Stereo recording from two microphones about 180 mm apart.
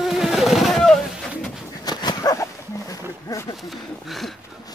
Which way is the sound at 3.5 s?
Centre (ahead or behind).